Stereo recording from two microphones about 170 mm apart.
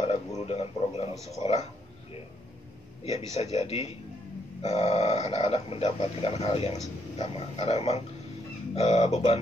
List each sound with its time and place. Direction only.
0.4 s speech: 35° left (ahead or behind)
3.0 s a man's voice: 40° left (ahead or behind)